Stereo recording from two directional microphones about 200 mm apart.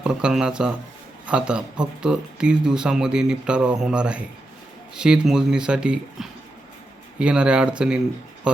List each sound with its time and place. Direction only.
0.0 s speech: 5° right (ahead or behind)